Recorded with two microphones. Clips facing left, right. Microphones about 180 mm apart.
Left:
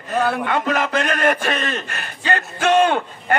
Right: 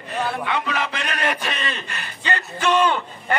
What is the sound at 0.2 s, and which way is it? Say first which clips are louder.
A man's voice: left 4 dB; 45° left (ahead or behind).